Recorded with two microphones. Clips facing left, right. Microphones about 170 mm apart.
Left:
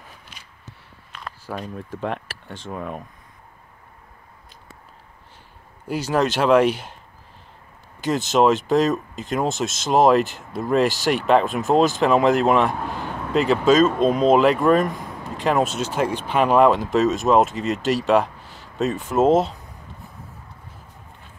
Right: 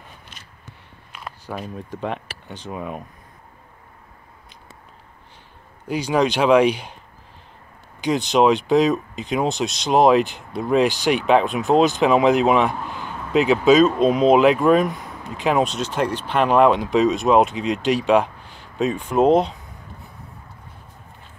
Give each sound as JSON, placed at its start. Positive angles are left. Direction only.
{"t": 0.3, "sound": "a sound", "side_deg": 10}
{"t": 1.4, "sound": "speech", "side_deg": 0}
{"t": 5.9, "sound": "speech", "side_deg": 5}
{"t": 8.0, "sound": "speech", "side_deg": 0}